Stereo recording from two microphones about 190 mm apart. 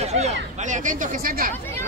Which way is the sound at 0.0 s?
35° right (ahead or behind).